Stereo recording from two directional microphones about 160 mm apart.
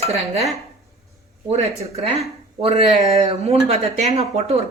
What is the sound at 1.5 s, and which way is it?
Speech, 40° right (ahead or behind).